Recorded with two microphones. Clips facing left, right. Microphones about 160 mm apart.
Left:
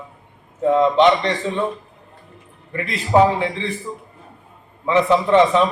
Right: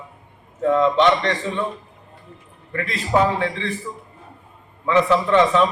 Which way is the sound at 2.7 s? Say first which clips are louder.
Left 3 dB; 20° left (ahead or behind).